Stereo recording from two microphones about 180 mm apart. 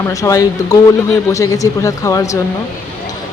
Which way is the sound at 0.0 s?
20° left (ahead or behind).